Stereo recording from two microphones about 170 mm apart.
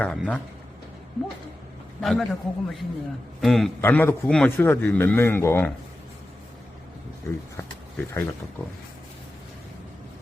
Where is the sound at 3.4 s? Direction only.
Centre (ahead or behind).